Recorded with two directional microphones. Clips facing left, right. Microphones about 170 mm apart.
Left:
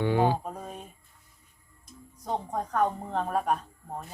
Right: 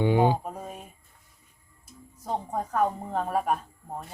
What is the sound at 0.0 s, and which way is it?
Mantra, 15° right (ahead or behind).